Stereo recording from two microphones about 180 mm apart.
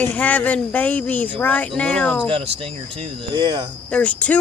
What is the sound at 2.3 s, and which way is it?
Speech, 35° right (ahead or behind).